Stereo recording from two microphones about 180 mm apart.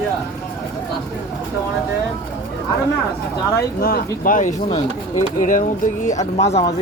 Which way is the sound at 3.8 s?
55° left (ahead or behind).